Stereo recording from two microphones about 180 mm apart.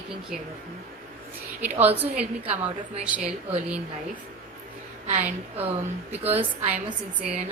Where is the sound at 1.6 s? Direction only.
10° right (ahead or behind).